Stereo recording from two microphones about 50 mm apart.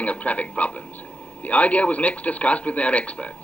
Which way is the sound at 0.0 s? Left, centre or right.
Left.